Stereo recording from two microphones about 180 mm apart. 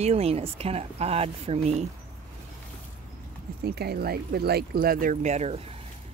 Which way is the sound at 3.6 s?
60° right (ahead or behind).